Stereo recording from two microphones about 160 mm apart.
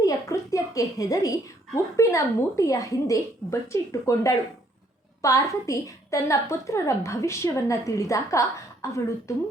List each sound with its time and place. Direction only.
0.0 s a woman's voice: 20° left (ahead or behind)